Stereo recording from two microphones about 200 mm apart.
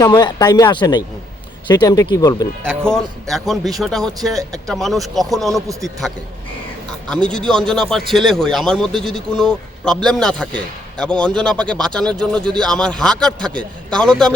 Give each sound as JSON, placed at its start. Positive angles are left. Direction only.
{"t": 0.0, "sound": "speech", "side_deg": 20}
{"t": 2.9, "sound": "a man's voice", "side_deg": 0}
{"t": 7.3, "sound": "a man's voice", "side_deg": 5}